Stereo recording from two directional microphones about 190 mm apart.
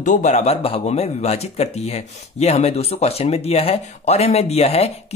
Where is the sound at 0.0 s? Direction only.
40° left (ahead or behind).